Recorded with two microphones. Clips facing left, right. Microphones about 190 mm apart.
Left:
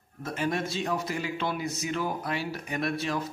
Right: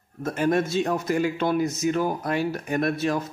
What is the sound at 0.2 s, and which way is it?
A man's voice, 45° right (ahead or behind).